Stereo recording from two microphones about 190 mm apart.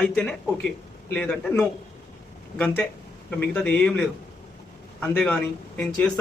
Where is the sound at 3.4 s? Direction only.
10° left (ahead or behind).